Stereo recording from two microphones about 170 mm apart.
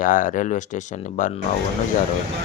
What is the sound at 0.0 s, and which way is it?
Speech, 50° left (ahead or behind).